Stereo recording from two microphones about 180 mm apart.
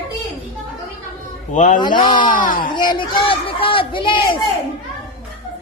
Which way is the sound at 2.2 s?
50° left (ahead or behind).